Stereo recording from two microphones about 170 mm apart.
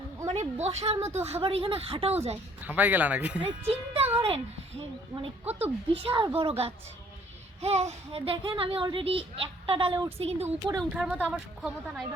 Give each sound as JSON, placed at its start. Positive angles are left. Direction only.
{"t": 0.3, "sound": "a woman's voice", "side_deg": -40}
{"t": 2.6, "sound": "speech", "side_deg": -10}
{"t": 3.7, "sound": "a child's voice", "side_deg": -35}
{"t": 5.1, "sound": "speech", "side_deg": -35}
{"t": 10.9, "sound": "a woman's voice", "side_deg": -5}